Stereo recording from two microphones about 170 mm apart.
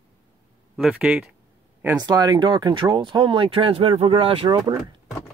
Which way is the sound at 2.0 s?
20° right (ahead or behind).